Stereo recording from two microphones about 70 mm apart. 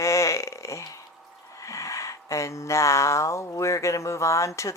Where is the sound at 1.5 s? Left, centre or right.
Left.